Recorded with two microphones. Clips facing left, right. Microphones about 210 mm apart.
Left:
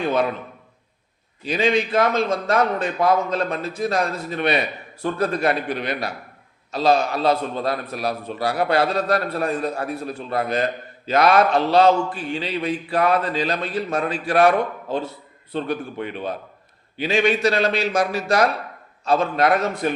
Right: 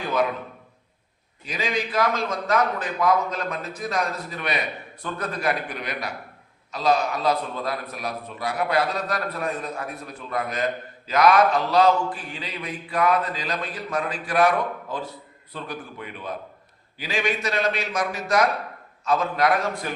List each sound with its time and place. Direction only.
0.0 s a man's voice: 25° left (ahead or behind)
1.5 s a man's voice: 30° left (ahead or behind)